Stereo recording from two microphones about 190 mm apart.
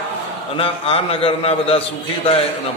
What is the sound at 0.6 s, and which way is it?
A man's voice, 30° left (ahead or behind).